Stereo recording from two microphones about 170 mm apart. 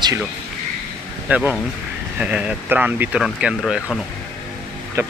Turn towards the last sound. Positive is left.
turn(degrees=-15)  # may be behind; listen again after turning